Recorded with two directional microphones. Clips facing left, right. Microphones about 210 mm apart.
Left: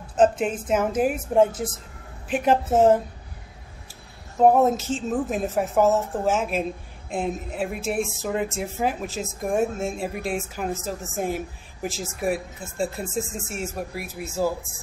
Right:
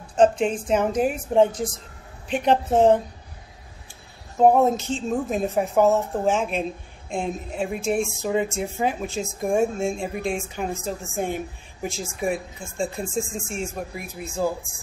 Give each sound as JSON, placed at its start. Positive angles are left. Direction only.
{"t": 0.1, "sound": "a woman's voice", "side_deg": 5}
{"t": 4.4, "sound": "a woman's voice", "side_deg": 0}